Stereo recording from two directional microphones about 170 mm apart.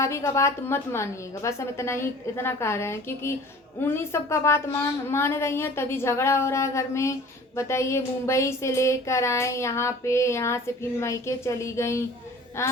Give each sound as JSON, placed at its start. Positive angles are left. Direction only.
{"t": 0.0, "sound": "a woman's voice", "side_deg": 15}